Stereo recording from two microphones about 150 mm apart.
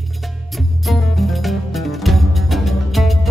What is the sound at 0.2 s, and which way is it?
Music, centre (ahead or behind).